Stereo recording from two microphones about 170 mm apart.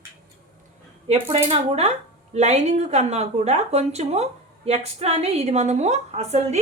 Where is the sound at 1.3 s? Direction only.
40° right (ahead or behind).